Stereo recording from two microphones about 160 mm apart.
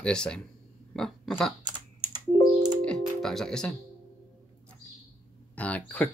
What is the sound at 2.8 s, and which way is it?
Music, 5° left (ahead or behind).